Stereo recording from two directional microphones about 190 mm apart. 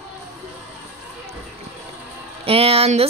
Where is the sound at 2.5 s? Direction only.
30° right (ahead or behind).